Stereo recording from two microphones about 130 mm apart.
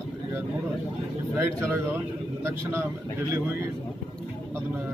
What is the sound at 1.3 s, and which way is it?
A man's voice, 15° right (ahead or behind).